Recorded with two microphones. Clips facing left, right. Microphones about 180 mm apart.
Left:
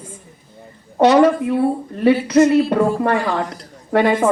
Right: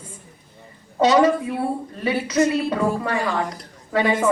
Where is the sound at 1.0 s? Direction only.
60° left (ahead or behind).